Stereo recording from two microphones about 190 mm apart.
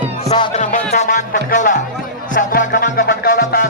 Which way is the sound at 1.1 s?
45° left (ahead or behind).